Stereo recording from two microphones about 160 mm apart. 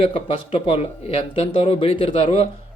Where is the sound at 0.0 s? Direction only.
35° left (ahead or behind).